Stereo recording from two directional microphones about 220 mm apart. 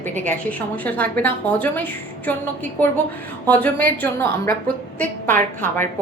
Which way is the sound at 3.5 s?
5° left (ahead or behind).